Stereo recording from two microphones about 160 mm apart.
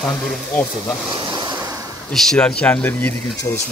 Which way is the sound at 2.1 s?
5° left (ahead or behind).